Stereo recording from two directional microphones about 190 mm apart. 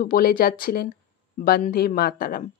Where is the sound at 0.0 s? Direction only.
50° left (ahead or behind).